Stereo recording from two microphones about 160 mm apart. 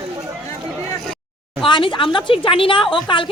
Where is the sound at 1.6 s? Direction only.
30° left (ahead or behind).